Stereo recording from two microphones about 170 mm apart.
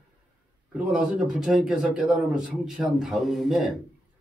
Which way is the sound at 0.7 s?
5° right (ahead or behind).